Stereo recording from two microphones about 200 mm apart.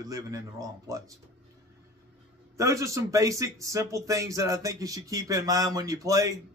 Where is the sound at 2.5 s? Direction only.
15° right (ahead or behind).